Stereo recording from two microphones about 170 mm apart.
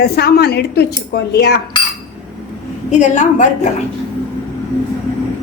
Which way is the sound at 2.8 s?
45° left (ahead or behind).